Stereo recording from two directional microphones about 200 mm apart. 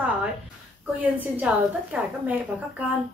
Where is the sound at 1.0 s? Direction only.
5° right (ahead or behind).